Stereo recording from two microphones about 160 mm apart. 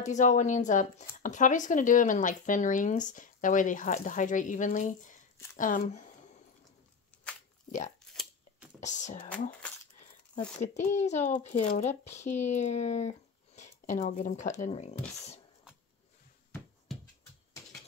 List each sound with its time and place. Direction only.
0.0 s speech: 50° left (ahead or behind)
8.8 s speech: 50° left (ahead or behind)
10.6 s speech: 45° left (ahead or behind)
16.9 s hands: centre (ahead or behind)